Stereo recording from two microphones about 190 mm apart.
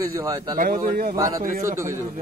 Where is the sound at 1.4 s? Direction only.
45° right (ahead or behind).